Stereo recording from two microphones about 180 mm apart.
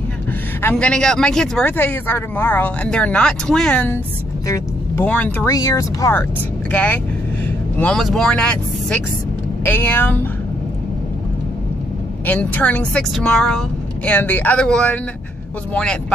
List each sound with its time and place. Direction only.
0.6 s speech: 10° left (ahead or behind)
12.3 s speech: 10° left (ahead or behind)